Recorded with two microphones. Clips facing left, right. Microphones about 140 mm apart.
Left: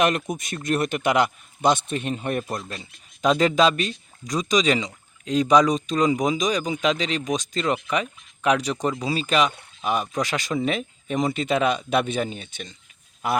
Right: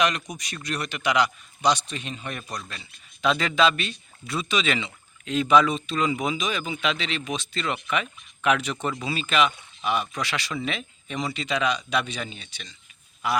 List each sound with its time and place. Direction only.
0.0 s speech: 50° left (ahead or behind)
2.4 s speech: 25° left (ahead or behind)
2.6 s speech: 40° left (ahead or behind)